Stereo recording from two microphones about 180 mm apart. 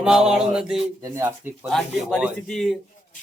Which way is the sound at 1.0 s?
15° right (ahead or behind).